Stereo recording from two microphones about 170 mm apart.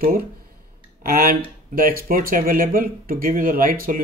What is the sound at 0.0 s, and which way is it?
Speech, 60° right (ahead or behind).